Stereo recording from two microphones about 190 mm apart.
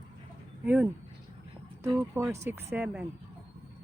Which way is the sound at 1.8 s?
15° right (ahead or behind).